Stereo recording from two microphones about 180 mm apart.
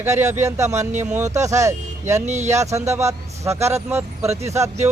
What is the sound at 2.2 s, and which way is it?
Speech, 40° right (ahead or behind).